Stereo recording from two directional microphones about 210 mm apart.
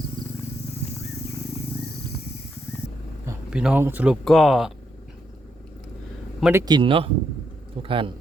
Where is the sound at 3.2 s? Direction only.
5° right (ahead or behind).